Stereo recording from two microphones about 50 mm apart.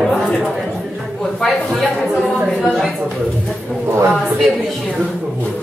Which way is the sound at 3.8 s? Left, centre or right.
Right.